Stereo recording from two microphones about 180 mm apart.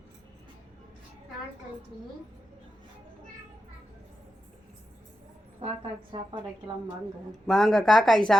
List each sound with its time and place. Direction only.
6.1 s a woman's voice: 30° right (ahead or behind)
7.4 s speech: centre (ahead or behind)